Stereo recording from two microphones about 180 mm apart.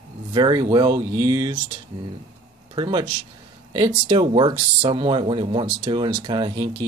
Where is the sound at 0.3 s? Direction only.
25° right (ahead or behind).